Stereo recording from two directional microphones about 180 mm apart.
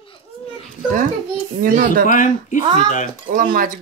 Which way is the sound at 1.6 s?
50° right (ahead or behind).